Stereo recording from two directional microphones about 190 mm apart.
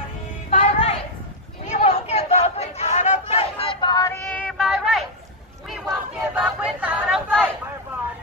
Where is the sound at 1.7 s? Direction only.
35° left (ahead or behind); by 5.0 s centre (ahead or behind).